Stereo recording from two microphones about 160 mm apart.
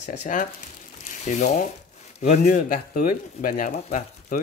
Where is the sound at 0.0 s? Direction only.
45° left (ahead or behind).